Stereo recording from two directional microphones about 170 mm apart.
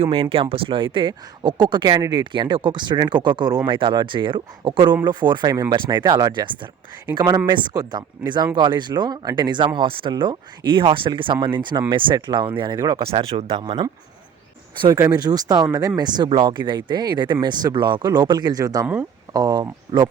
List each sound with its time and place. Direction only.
0.0 s speech: 35° right (ahead or behind)